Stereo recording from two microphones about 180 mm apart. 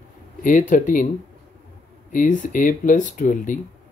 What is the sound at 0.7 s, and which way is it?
Speech, 50° left (ahead or behind).